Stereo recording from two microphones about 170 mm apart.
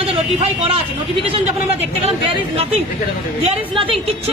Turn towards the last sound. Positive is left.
turn(degrees=-35)  # may be behind; listen again after turning